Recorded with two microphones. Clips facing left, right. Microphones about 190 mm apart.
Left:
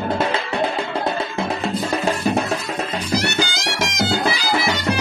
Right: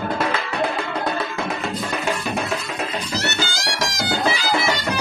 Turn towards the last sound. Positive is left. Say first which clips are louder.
# left 2 dB
turn(degrees=20)  # may be behind; listen again after turning